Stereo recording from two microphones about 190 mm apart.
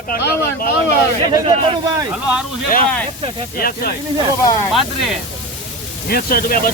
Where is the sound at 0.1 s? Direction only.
50° left (ahead or behind).